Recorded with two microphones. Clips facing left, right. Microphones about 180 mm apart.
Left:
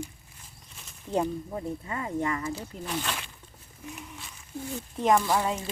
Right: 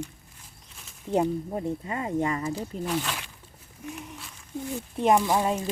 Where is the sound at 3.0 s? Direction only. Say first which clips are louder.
Even; 5° right (ahead or behind).